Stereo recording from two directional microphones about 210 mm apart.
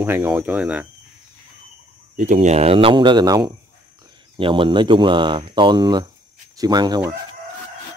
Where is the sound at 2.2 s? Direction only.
35° right (ahead or behind); by 7.1 s 20° right (ahead or behind).